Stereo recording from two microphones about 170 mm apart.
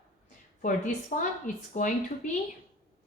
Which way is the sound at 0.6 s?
50° left (ahead or behind).